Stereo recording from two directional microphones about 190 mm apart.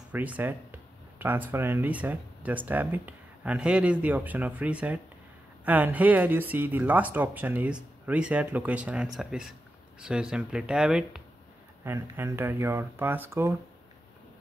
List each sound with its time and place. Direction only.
0.1 s speech: 10° right (ahead or behind)